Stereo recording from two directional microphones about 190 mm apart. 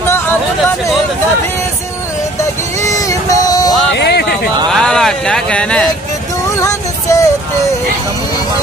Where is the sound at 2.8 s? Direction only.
15° left (ahead or behind).